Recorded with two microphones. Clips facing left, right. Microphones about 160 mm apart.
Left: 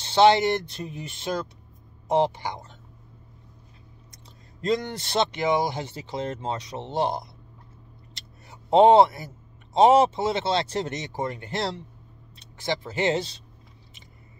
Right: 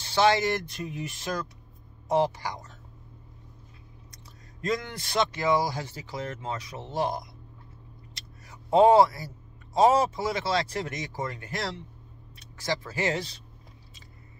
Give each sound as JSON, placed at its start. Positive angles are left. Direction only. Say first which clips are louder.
{"t": 0.0, "sound": "speech", "louder": "left 5 dB", "side_deg": 25}
{"t": 4.6, "sound": "speech", "louder": "left 5 dB", "side_deg": 25}
{"t": 8.5, "sound": "speech", "louder": "left 3 dB", "side_deg": 25}